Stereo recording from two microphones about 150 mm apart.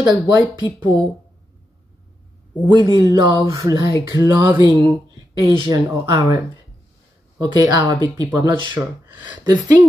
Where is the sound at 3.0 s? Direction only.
25° right (ahead or behind).